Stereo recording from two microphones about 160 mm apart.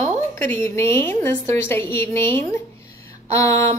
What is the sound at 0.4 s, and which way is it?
Speech, 15° left (ahead or behind).